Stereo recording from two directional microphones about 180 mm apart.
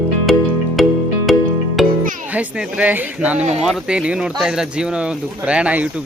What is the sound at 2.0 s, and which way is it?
Music, 45° right (ahead or behind).